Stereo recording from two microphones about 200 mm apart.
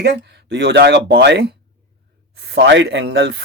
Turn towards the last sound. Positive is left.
turn(degrees=-60)  # may be behind; listen again after turning